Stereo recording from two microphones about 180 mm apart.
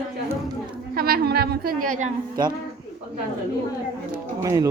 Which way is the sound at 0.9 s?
55° right (ahead or behind).